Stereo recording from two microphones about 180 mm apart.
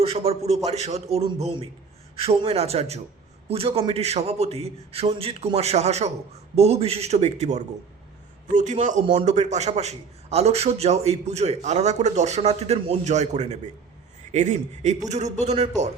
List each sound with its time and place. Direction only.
0.0 s a man's voice: 35° right (ahead or behind)